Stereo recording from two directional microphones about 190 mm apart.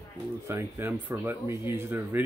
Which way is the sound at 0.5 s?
15° right (ahead or behind).